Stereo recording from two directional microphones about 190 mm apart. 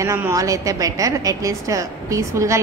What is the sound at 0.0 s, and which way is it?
A woman's voice, 15° right (ahead or behind).